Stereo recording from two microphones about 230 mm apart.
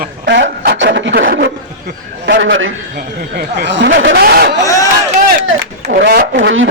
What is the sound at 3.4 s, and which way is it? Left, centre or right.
Chatter, right.